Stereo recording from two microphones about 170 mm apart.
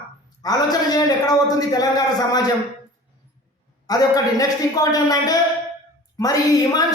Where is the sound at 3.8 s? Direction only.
20° left (ahead or behind).